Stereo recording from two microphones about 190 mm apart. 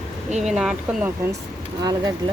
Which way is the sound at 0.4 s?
Centre (ahead or behind).